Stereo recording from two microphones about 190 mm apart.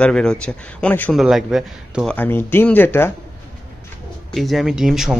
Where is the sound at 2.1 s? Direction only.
10° left (ahead or behind).